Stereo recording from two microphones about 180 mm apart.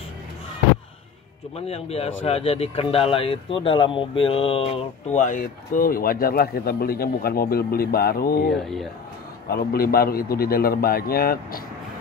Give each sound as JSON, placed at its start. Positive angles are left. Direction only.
{"t": 1.7, "sound": "a man's voice", "side_deg": 35}